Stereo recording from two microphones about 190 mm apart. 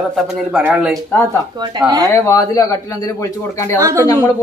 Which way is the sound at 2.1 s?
15° left (ahead or behind).